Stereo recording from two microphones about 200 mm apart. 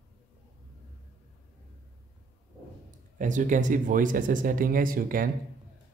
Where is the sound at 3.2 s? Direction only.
40° right (ahead or behind).